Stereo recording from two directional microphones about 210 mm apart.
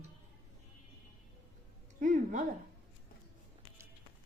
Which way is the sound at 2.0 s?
35° right (ahead or behind).